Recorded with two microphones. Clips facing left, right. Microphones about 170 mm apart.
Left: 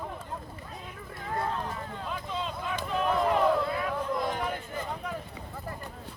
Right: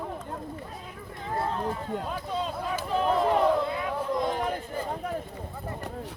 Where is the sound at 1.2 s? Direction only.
25° right (ahead or behind).